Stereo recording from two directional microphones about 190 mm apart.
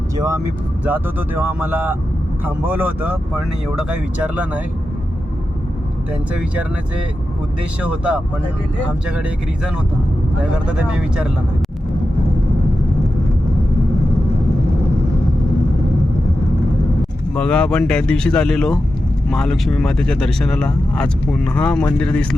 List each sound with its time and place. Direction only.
0.2 s speech: 15° right (ahead or behind)
7.8 s speech: 5° right (ahead or behind)
10.4 s speech: 5° right (ahead or behind)
17.3 s speech: 5° left (ahead or behind)